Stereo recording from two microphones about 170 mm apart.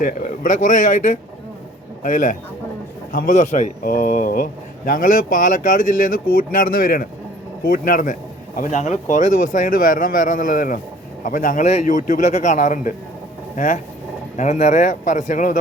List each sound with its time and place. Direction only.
0.0 s speech: 50° left (ahead or behind)